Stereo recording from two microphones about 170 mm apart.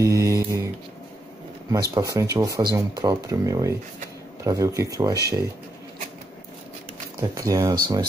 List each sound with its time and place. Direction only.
0.0 s mantra: 15° right (ahead or behind)
1.7 s speech: 20° right (ahead or behind)
7.2 s speech: 20° right (ahead or behind)